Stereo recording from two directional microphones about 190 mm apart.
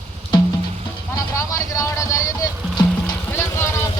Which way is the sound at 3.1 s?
10° left (ahead or behind).